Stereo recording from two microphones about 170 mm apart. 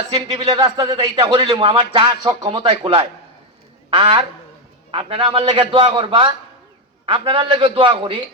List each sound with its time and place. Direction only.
0.1 s a man's voice: 30° right (ahead or behind)